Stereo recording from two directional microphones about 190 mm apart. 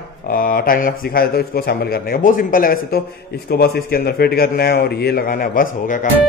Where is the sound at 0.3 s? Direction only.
50° left (ahead or behind).